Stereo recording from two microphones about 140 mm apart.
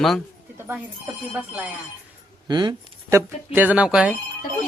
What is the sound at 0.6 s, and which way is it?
Speech, 15° right (ahead or behind).